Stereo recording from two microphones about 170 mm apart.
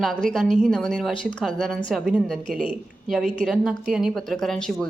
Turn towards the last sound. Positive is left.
turn(degrees=0)  # may be behind; listen again after turning